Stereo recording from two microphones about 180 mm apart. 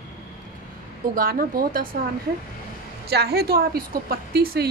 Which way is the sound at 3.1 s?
65° right (ahead or behind).